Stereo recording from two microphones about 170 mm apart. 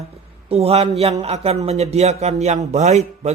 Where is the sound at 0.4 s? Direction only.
35° right (ahead or behind).